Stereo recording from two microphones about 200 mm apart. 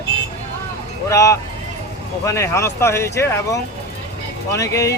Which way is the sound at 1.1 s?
15° left (ahead or behind).